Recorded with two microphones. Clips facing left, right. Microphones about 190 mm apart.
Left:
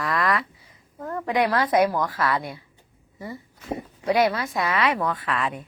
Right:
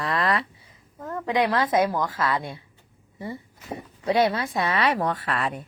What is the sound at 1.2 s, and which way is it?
Speech, 20° right (ahead or behind).